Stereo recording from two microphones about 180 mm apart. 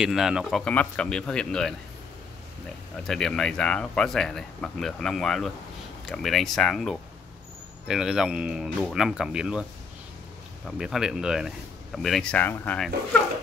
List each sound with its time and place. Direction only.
0.0 s speech: 5° right (ahead or behind)
3.1 s speech: 5° left (ahead or behind)
10.8 s speech: 5° right (ahead or behind)